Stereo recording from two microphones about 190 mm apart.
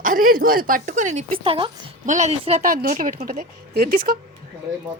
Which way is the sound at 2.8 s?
45° right (ahead or behind).